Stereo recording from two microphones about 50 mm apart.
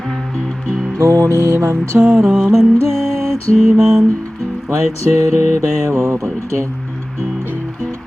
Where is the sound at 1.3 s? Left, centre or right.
Right.